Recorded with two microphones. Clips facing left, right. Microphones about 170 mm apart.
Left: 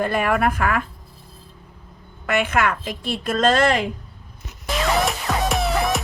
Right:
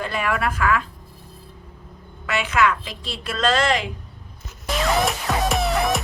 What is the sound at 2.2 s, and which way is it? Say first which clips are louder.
A woman's voice: even; 55° left (ahead or behind).